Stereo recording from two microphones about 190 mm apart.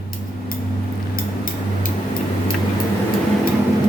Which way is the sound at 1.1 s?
50° left (ahead or behind).